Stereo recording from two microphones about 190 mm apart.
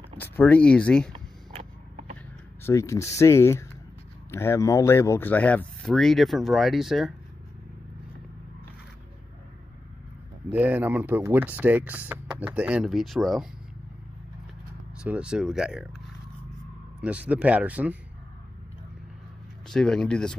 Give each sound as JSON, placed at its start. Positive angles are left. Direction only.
{"t": 0.2, "sound": "speech", "side_deg": 10}
{"t": 1.6, "sound": "a sound", "side_deg": -40}
{"t": 2.6, "sound": "speech", "side_deg": 15}
{"t": 10.5, "sound": "speech", "side_deg": -10}
{"t": 15.0, "sound": "speech", "side_deg": -5}
{"t": 17.0, "sound": "speech", "side_deg": -5}
{"t": 19.7, "sound": "speech", "side_deg": 5}